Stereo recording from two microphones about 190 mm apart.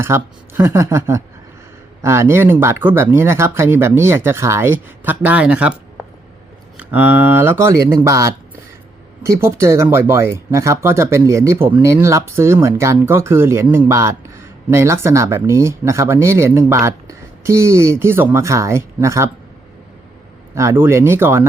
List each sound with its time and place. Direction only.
0.0 s speech: 15° right (ahead or behind)
6.7 s speech: 10° right (ahead or behind)
20.6 s speech: 15° right (ahead or behind)